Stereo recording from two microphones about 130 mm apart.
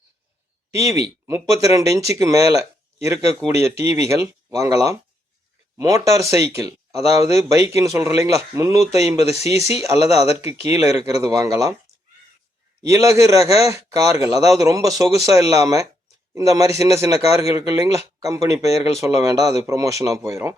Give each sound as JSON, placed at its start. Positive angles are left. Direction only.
{"t": 0.7, "sound": "speech", "side_deg": -25}
{"t": 12.9, "sound": "speech", "side_deg": -25}